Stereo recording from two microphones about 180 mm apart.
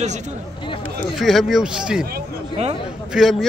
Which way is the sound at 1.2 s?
Centre (ahead or behind).